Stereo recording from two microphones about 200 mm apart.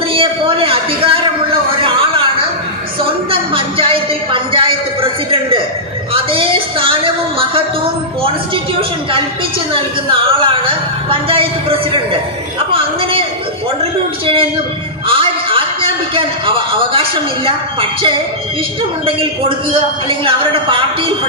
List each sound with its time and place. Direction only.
0.1 s a sound: 25° right (ahead or behind)
9.7 s a man's voice: 25° right (ahead or behind)
12.7 s a man's voice: 25° right (ahead or behind)
15.0 s music: 25° right (ahead or behind)
16.1 s a man's voice: 25° right (ahead or behind)